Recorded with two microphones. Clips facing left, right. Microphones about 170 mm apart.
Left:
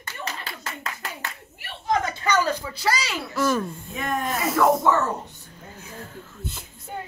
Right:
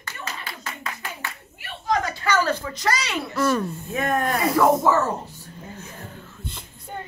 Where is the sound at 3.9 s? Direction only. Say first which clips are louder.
Right 5 dB; 55° right (ahead or behind).